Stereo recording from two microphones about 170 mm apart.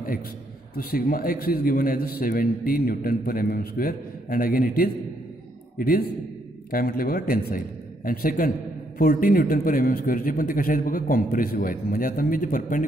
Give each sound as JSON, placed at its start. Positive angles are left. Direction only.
{"t": 0.7, "sound": "a man's voice", "side_deg": 60}